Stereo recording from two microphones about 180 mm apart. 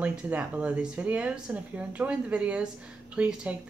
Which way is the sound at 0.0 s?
5° right (ahead or behind).